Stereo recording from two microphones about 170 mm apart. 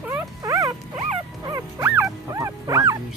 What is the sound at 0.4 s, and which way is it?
Dog, 20° right (ahead or behind).